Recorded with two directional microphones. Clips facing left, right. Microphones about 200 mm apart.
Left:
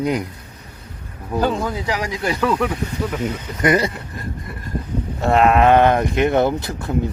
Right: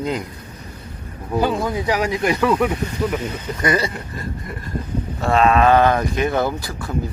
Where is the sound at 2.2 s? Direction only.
15° right (ahead or behind).